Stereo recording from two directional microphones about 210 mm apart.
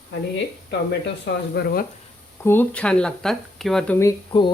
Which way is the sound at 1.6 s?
50° left (ahead or behind).